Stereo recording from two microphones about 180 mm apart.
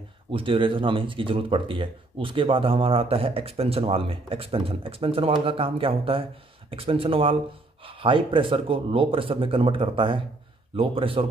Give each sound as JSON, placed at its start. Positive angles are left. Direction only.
{"t": 0.3, "sound": "speech", "side_deg": -30}